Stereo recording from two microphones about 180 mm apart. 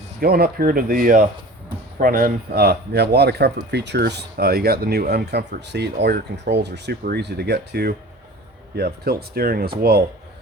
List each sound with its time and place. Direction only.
0.2 s speech: 55° right (ahead or behind)